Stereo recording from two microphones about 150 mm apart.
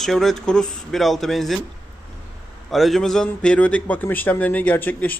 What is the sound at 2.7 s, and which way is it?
A man's voice, centre (ahead or behind).